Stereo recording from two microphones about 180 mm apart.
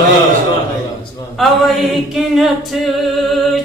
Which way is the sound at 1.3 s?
Centre (ahead or behind).